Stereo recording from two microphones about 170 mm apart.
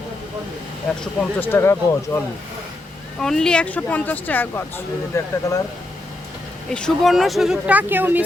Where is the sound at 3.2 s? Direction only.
5° left (ahead or behind).